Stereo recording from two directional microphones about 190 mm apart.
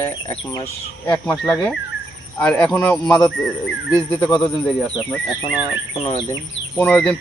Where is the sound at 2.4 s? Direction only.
5° left (ahead or behind).